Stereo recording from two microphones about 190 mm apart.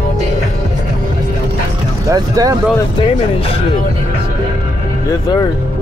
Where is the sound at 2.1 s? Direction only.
20° right (ahead or behind).